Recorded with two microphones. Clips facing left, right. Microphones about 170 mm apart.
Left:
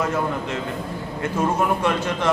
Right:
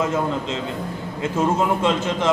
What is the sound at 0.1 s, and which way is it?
A man's voice, 20° right (ahead or behind).